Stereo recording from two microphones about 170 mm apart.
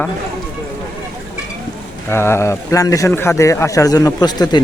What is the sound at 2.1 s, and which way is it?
A man's voice, 15° left (ahead or behind).